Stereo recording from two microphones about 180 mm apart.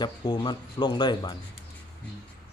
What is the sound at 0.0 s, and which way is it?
Speech, 25° left (ahead or behind).